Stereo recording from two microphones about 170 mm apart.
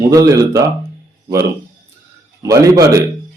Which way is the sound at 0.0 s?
20° right (ahead or behind).